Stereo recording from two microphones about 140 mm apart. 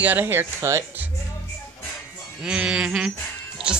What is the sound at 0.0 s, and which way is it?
Speech, 15° right (ahead or behind).